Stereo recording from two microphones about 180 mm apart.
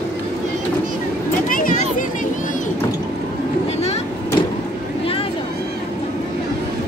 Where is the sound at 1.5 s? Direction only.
50° left (ahead or behind).